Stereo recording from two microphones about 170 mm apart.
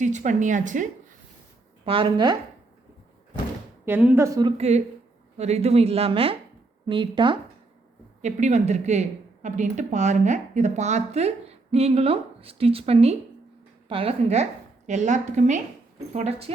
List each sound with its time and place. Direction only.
0.0 s speech: 45° right (ahead or behind)
1.8 s speech: 30° right (ahead or behind)
3.8 s speech: 15° right (ahead or behind)
4.5 s speech: 40° right (ahead or behind)
8.2 s speech: 45° right (ahead or behind)